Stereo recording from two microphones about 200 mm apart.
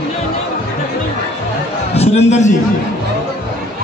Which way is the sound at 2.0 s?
35° left (ahead or behind).